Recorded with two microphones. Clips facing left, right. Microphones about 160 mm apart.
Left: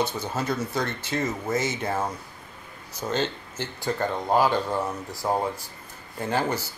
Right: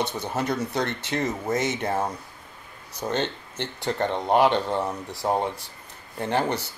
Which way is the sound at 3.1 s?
65° right (ahead or behind).